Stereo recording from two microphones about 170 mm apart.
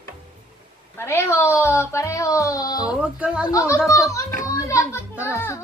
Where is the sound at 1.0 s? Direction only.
15° left (ahead or behind).